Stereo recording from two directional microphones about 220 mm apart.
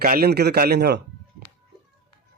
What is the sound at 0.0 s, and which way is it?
A man's voice, 45° right (ahead or behind).